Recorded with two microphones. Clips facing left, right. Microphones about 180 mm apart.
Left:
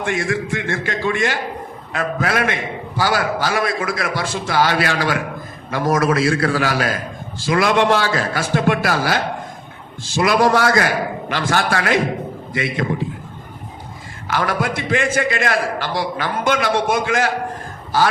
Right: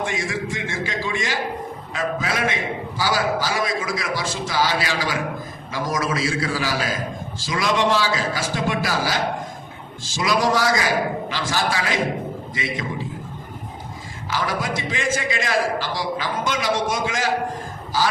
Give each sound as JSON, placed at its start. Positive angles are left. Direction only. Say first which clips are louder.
{"t": 0.0, "sound": "a man's voice", "louder": "left 4 dB", "side_deg": 60}
{"t": 14.3, "sound": "a man's voice", "louder": "left 4 dB", "side_deg": 60}